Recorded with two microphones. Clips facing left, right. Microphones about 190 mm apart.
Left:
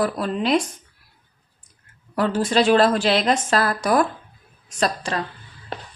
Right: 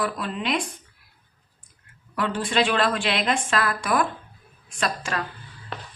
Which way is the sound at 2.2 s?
40° left (ahead or behind).